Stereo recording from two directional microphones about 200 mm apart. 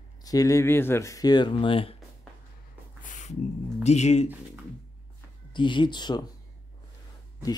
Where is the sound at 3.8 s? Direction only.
35° left (ahead or behind).